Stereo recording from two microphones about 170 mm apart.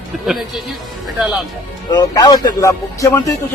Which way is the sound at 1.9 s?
25° left (ahead or behind).